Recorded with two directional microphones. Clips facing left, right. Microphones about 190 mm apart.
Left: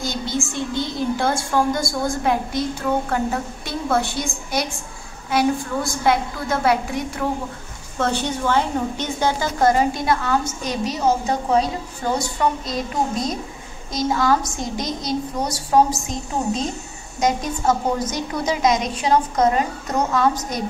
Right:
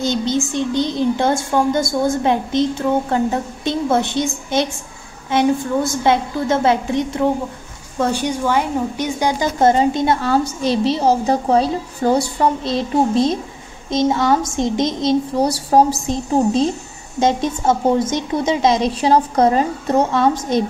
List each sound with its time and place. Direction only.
0.0 s a woman's voice: 20° right (ahead or behind)
8.0 s a woman's voice: 10° right (ahead or behind)